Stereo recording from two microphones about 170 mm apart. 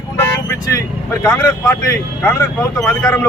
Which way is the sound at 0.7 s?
20° left (ahead or behind).